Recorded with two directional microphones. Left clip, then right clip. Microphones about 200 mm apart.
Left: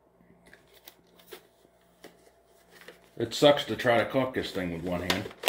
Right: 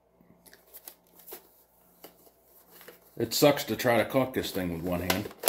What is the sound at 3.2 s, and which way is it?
Speech, 20° right (ahead or behind).